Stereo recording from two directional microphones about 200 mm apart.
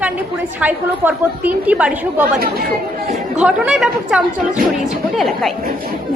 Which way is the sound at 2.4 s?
50° right (ahead or behind).